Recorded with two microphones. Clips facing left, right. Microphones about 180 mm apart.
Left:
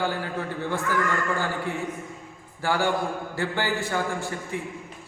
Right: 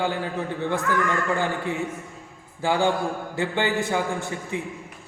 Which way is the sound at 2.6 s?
20° right (ahead or behind).